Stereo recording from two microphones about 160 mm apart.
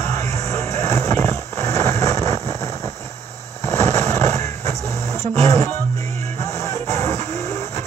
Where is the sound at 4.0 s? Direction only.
45° right (ahead or behind).